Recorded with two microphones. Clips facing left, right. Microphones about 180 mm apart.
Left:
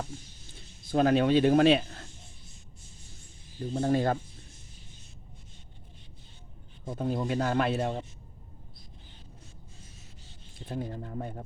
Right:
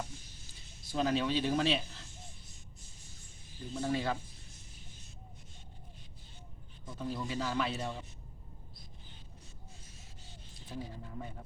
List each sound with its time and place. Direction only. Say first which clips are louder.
0.5 s speech: left 8 dB; 55° left (ahead or behind)
3.7 s speech: left 7 dB; 50° left (ahead or behind)
6.8 s a man's voice: left 8 dB; 50° left (ahead or behind)
10.7 s speech: left 8 dB; 55° left (ahead or behind)